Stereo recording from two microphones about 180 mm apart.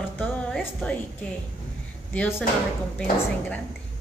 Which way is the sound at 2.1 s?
10° left (ahead or behind).